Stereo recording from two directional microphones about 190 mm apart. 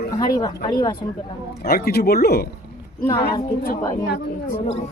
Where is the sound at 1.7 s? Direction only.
50° left (ahead or behind).